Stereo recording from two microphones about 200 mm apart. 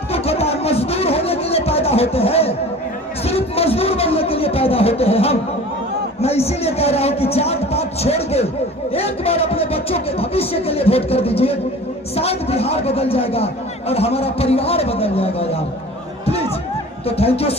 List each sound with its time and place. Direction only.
0.1 s a sound: 30° left (ahead or behind)
8.9 s a man's voice: 30° left (ahead or behind)
17.1 s a man's voice: 30° left (ahead or behind)